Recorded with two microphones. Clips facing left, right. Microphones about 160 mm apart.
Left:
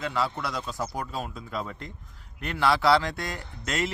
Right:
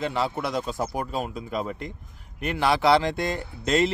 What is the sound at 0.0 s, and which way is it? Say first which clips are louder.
Speech: right 3 dB; 25° right (ahead or behind).